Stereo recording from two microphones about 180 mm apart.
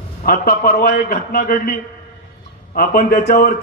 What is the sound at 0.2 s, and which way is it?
A man's voice, 55° left (ahead or behind).